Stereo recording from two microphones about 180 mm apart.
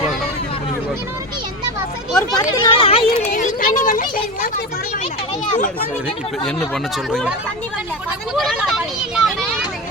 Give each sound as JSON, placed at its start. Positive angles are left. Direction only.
{"t": 2.3, "sound": "a child's voice", "side_deg": 25}
{"t": 6.9, "sound": "speech", "side_deg": 0}
{"t": 8.4, "sound": "speech", "side_deg": 0}